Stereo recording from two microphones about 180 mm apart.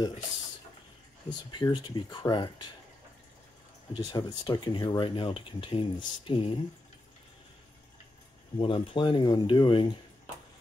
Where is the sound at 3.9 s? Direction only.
25° left (ahead or behind).